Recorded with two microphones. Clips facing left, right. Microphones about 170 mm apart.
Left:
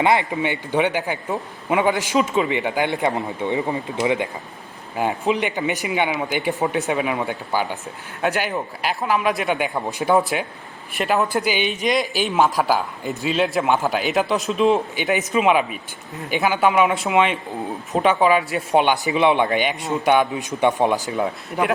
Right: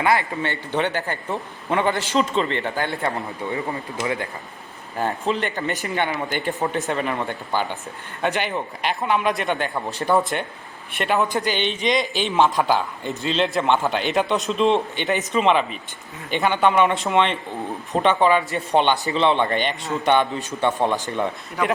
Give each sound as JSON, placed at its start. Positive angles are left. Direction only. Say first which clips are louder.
{"t": 0.0, "sound": "a man's voice", "louder": "left 2 dB", "side_deg": 20}